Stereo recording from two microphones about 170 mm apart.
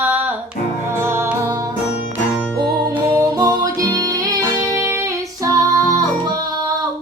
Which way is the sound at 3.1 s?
20° right (ahead or behind).